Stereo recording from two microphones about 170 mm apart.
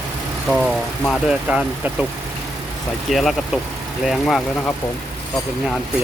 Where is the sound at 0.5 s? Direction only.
Centre (ahead or behind).